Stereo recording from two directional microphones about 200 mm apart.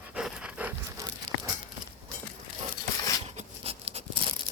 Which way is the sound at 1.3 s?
45° right (ahead or behind).